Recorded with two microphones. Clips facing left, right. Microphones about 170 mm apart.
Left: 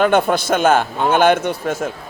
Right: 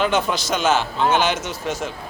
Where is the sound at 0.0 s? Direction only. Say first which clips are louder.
Left 6 dB; 55° left (ahead or behind).